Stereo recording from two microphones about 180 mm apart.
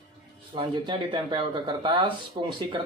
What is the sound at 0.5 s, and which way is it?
Speech, 25° right (ahead or behind).